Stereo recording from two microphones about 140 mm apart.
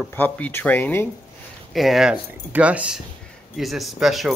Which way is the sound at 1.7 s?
Centre (ahead or behind).